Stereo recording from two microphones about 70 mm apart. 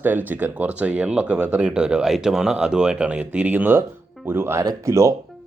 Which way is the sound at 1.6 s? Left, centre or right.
Centre.